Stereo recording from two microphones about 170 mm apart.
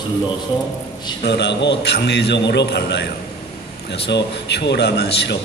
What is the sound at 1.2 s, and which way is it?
A man's voice, 90° left.